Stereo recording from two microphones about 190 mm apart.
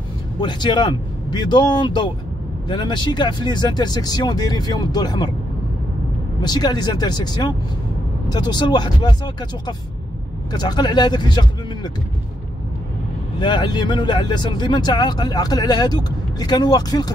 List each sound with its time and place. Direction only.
0.4 s speech: 25° left (ahead or behind)
6.4 s speech: 20° left (ahead or behind)
13.4 s speech: 25° left (ahead or behind)